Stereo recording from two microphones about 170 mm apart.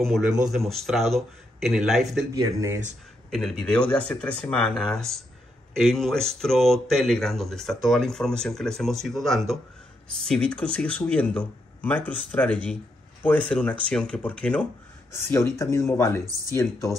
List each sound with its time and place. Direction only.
0.0 s speech: centre (ahead or behind)
2.3 s speech: 15° right (ahead or behind)
3.3 s speech: centre (ahead or behind)